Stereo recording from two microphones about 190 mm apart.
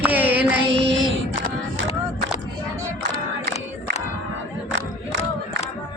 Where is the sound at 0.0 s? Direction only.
10° right (ahead or behind).